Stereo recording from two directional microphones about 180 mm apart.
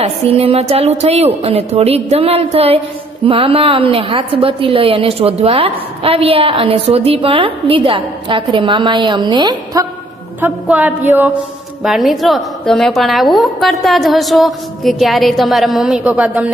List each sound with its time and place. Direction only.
0.0 s a woman's voice: 35° right (ahead or behind)
10.4 s a sound: 10° right (ahead or behind)
11.8 s a woman's voice: centre (ahead or behind)